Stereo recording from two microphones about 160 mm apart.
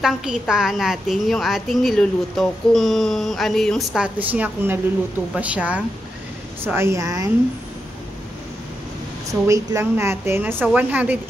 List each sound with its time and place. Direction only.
0.0 s a woman's voice: 5° right (ahead or behind); by 7.2 s 20° right (ahead or behind)
9.3 s a woman's voice: 20° right (ahead or behind)